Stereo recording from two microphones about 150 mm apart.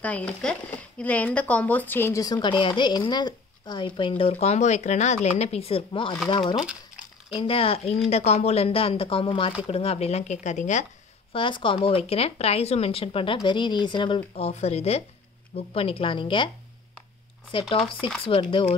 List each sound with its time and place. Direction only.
0.0 s speech: 10° left (ahead or behind); by 4.1 s 30° left (ahead or behind)
4.2 s speech: 45° left (ahead or behind)
6.4 s speech: 5° right (ahead or behind)
7.3 s speech: 35° left (ahead or behind); by 10.9 s 55° left (ahead or behind)
11.3 s speech: 35° left (ahead or behind)
17.5 s speech: 35° left (ahead or behind)